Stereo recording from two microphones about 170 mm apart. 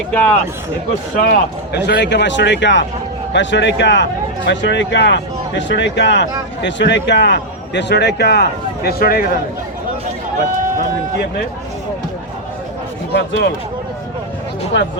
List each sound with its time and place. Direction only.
0.1 s a man's voice: 10° left (ahead or behind)
1.2 s speech: 75° left (ahead or behind)
13.1 s speech: 90° left
14.7 s speech: 90° left